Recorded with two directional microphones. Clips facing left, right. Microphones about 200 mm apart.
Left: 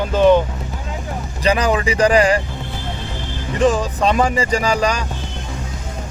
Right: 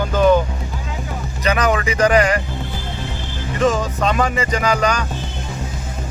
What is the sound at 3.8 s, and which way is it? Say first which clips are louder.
Speech: left 2 dB; 35° left (ahead or behind).